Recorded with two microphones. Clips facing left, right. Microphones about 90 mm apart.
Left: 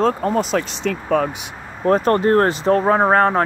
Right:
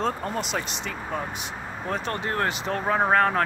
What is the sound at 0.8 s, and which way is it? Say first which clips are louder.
Speech: left 12 dB; 90° left.